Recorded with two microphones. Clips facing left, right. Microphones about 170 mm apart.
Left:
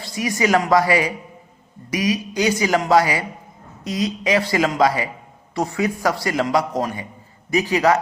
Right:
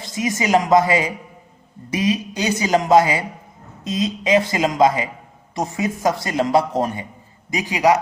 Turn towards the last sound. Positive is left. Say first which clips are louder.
# even
turn(degrees=-15)  # may be behind; listen again after turning